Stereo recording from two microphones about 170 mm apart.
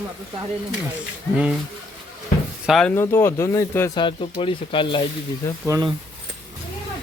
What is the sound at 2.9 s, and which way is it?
Speech, 15° left (ahead or behind).